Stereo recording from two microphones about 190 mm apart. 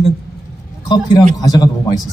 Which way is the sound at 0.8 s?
20° left (ahead or behind).